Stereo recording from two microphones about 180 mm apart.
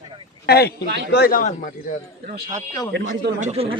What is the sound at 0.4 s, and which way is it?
A man's voice, 60° left (ahead or behind).